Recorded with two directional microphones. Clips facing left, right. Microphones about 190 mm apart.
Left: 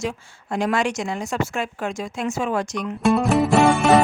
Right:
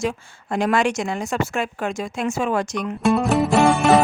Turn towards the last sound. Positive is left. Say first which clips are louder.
# even
turn(degrees=0)  # may be behind; listen again after turning